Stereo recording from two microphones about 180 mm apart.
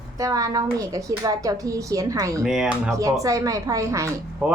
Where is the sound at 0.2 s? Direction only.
20° right (ahead or behind).